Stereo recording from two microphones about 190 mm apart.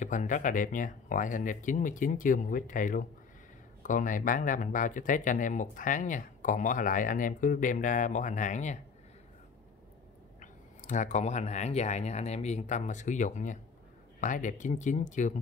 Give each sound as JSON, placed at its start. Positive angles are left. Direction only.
{"t": 0.0, "sound": "speech", "side_deg": 40}
{"t": 10.4, "sound": "speech", "side_deg": 40}